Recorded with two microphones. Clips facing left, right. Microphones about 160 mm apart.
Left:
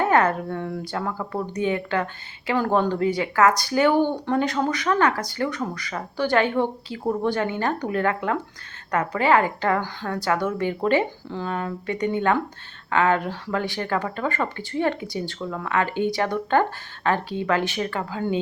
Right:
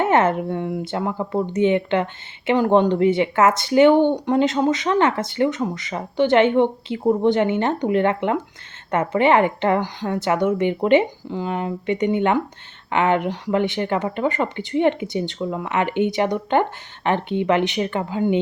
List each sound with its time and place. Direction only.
0.0 s speech: 25° right (ahead or behind)